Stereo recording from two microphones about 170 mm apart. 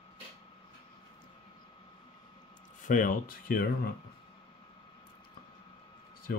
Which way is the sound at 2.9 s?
50° left (ahead or behind).